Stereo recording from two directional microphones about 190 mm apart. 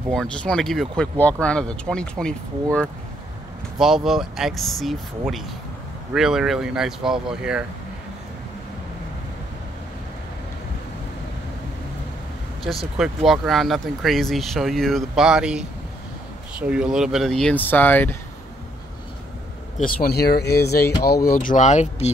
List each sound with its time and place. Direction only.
0.1 s speech: 5° left (ahead or behind)
12.6 s speech: centre (ahead or behind)
19.8 s speech: 50° left (ahead or behind)